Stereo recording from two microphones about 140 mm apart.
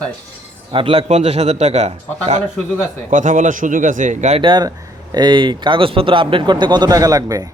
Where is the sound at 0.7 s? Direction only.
40° right (ahead or behind).